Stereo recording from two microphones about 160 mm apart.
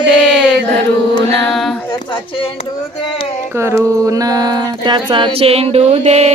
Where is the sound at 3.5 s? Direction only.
15° right (ahead or behind).